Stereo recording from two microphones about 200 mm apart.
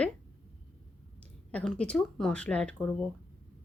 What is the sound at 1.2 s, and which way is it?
Speech, 5° left (ahead or behind).